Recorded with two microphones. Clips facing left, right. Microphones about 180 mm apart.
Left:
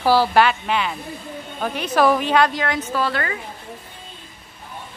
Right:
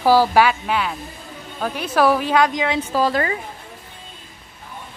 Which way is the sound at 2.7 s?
35° right (ahead or behind).